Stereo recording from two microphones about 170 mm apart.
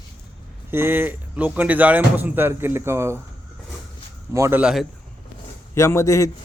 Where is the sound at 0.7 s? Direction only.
15° right (ahead or behind).